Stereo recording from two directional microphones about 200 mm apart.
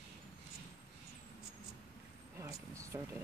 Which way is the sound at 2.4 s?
15° right (ahead or behind).